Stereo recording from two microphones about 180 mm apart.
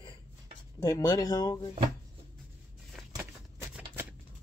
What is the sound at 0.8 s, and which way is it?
Speech, 20° left (ahead or behind).